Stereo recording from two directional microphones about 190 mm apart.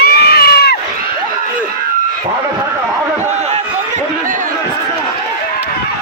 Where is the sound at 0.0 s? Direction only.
55° left (ahead or behind).